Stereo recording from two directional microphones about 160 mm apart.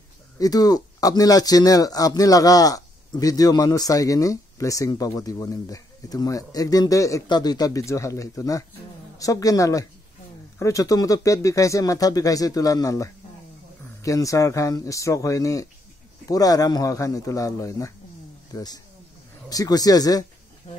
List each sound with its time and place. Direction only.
0.4 s speech: 25° left (ahead or behind)
20.7 s speech: 45° left (ahead or behind)